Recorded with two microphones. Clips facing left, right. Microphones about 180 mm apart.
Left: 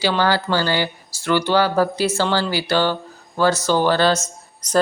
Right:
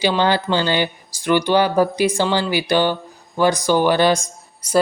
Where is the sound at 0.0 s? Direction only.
20° right (ahead or behind).